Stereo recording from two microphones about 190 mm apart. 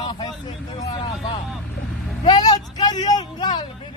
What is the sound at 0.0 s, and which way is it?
Vehicle, 25° left (ahead or behind).